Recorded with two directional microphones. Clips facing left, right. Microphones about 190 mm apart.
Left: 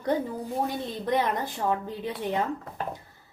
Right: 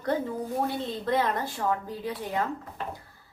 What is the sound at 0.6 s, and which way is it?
A woman's voice, 15° left (ahead or behind).